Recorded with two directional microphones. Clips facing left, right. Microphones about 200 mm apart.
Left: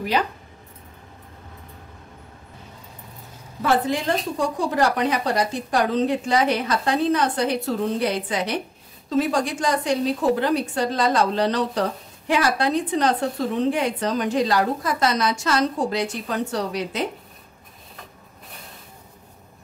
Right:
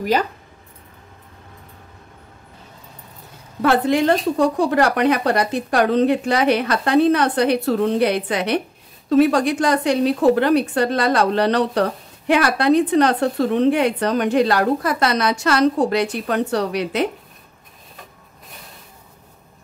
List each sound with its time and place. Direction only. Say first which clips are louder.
3.6 s a woman's voice: right 5 dB; 65° right (ahead or behind)